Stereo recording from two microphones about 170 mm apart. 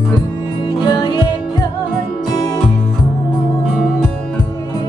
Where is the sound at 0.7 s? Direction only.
25° left (ahead or behind).